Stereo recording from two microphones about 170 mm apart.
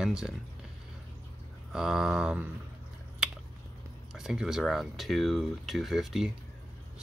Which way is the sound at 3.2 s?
5° right (ahead or behind).